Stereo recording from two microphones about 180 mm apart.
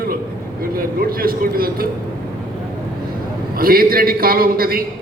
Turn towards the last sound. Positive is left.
turn(degrees=-55)  # may be behind; listen again after turning